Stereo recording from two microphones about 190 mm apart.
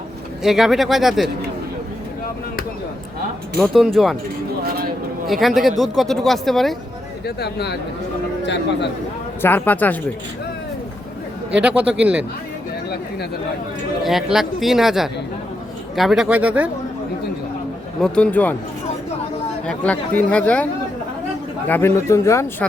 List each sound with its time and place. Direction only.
0.4 s speech: centre (ahead or behind)
3.6 s speech: centre (ahead or behind)
5.3 s speech: centre (ahead or behind)
7.3 s speech: 60° left (ahead or behind)
9.4 s speech: 10° left (ahead or behind)
11.5 s speech: 5° right (ahead or behind)
14.0 s speech: centre (ahead or behind)
18.0 s speech: 5° left (ahead or behind)
19.6 s speech: 5° left (ahead or behind)
21.7 s speech: 10° left (ahead or behind)